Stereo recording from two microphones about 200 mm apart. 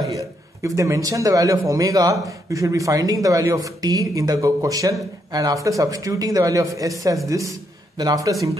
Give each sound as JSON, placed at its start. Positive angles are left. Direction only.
{"t": 0.6, "sound": "speech", "side_deg": -15}